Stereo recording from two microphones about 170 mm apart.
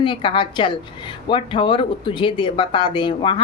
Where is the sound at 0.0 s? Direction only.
30° left (ahead or behind).